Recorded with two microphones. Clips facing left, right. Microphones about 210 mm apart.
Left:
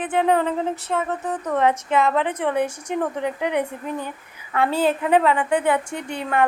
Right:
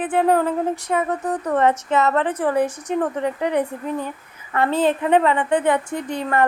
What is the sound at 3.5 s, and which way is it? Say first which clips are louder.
Speech: right 2 dB; 35° right (ahead or behind).